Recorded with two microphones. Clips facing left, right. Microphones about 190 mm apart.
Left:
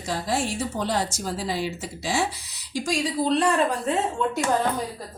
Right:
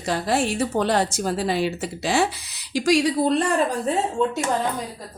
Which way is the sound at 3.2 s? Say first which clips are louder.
Right 2 dB; 50° right (ahead or behind).